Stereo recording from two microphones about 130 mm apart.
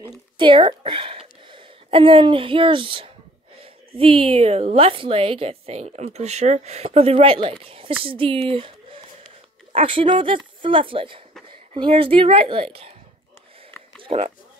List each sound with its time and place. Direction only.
0.4 s a woman's voice: 40° right (ahead or behind)
14.1 s speech: 55° right (ahead or behind)